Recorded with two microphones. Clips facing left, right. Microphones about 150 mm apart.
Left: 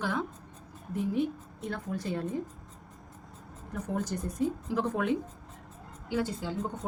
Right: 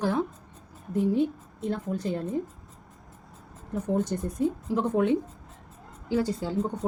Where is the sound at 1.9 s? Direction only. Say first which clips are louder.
Right 4 dB; 25° right (ahead or behind).